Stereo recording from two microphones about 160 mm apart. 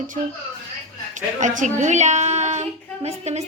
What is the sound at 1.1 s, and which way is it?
A woman's voice, 50° right (ahead or behind).